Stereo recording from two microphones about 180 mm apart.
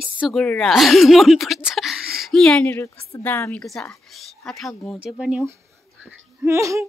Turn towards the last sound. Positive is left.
turn(degrees=-15)  # may be behind; listen again after turning